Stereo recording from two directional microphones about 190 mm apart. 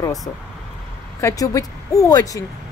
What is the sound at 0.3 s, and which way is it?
A woman's voice, 15° left (ahead or behind).